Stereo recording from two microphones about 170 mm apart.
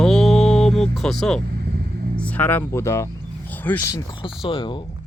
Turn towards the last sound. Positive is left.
turn(degrees=30)  # may be behind; listen again after turning